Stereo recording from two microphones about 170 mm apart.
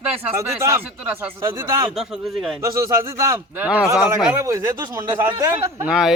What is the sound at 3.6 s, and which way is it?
Speech, 5° right (ahead or behind).